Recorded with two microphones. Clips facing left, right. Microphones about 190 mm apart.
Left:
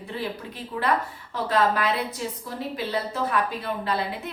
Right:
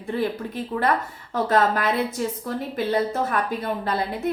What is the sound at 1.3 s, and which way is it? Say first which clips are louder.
Speech: right 3 dB; 45° right (ahead or behind).